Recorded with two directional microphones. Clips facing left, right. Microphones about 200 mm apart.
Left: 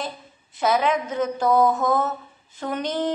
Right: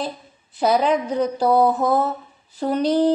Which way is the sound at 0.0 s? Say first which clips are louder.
Right 4 dB; 35° right (ahead or behind).